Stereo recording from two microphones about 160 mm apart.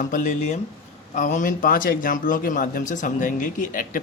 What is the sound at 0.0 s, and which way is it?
A man's voice, 50° left (ahead or behind).